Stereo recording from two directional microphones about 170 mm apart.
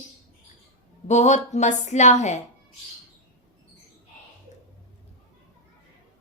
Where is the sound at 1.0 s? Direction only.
45° left (ahead or behind).